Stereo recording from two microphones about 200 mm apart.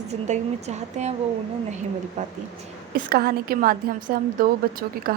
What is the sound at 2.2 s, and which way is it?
Speech, 40° right (ahead or behind).